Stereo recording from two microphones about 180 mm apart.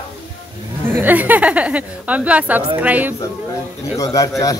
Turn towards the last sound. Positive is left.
turn(degrees=20)  # may be behind; listen again after turning